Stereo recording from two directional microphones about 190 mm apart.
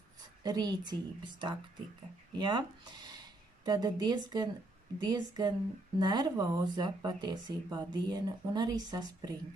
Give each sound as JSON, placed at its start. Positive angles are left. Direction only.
{"t": 0.2, "sound": "speech", "side_deg": -20}